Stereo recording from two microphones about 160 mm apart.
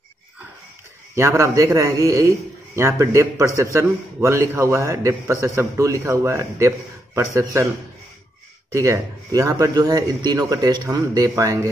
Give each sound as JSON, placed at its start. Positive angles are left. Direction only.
{"t": 1.1, "sound": "a man's voice", "side_deg": -20}
{"t": 8.7, "sound": "a man's voice", "side_deg": -20}